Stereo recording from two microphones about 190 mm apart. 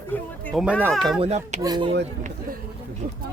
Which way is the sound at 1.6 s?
20° right (ahead or behind).